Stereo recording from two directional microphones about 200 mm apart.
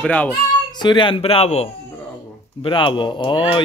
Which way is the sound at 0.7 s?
20° left (ahead or behind).